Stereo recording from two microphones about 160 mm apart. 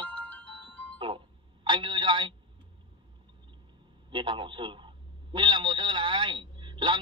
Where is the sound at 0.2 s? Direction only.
10° left (ahead or behind).